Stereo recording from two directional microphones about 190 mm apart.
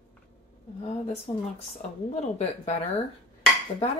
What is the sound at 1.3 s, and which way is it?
Speech, 30° left (ahead or behind).